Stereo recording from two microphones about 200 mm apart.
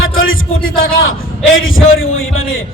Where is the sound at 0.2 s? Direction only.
85° left.